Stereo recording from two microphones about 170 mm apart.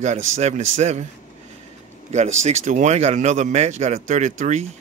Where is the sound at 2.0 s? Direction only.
45° right (ahead or behind).